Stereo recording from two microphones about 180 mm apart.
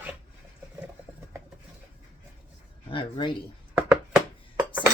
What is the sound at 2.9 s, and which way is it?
Speech, 25° left (ahead or behind).